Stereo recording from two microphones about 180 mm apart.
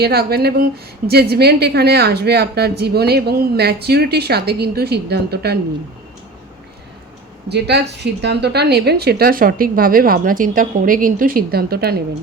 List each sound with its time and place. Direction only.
0.0 s a woman's voice: 60° right (ahead or behind)
7.4 s a woman's voice: 65° right (ahead or behind)